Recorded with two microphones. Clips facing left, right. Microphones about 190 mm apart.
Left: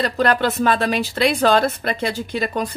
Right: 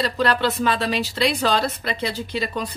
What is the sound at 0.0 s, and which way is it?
Speech, 50° left (ahead or behind).